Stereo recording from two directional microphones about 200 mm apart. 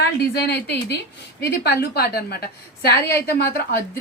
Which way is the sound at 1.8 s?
50° left (ahead or behind).